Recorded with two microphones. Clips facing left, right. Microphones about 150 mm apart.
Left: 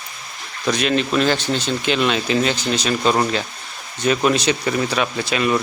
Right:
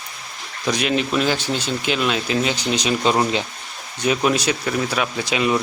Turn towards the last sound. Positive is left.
turn(degrees=-15)  # may be behind; listen again after turning